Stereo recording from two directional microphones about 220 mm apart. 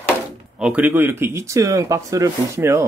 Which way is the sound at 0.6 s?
10° right (ahead or behind).